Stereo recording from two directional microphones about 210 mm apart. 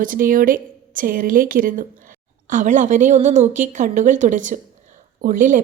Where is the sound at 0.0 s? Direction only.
40° right (ahead or behind).